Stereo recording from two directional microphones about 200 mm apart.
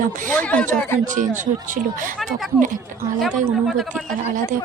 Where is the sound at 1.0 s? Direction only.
40° right (ahead or behind).